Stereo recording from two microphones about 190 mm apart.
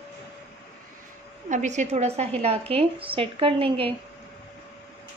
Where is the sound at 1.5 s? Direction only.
40° right (ahead or behind).